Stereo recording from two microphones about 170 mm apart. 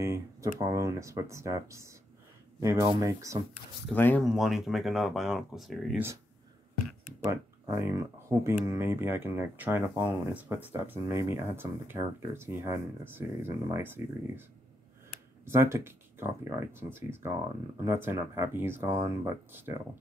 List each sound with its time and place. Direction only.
0.0 s speech: 15° right (ahead or behind)
3.9 s speech: 10° left (ahead or behind)
4.3 s speech: centre (ahead or behind)
7.2 s speech: 15° right (ahead or behind)
15.4 s speech: 15° right (ahead or behind)